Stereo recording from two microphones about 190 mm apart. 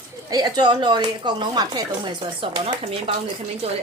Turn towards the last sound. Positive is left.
turn(degrees=-30)  # may be behind; listen again after turning